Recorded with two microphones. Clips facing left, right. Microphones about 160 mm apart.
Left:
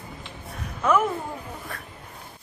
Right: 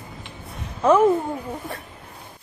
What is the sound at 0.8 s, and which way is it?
Speech, 30° right (ahead or behind).